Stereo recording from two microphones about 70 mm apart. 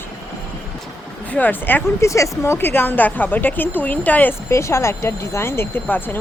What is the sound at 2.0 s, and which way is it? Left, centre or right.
A woman's voice, left.